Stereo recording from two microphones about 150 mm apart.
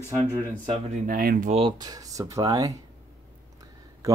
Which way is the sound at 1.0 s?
75° right (ahead or behind).